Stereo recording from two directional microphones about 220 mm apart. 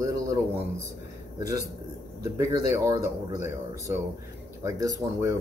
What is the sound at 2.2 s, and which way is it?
Speech, 15° right (ahead or behind).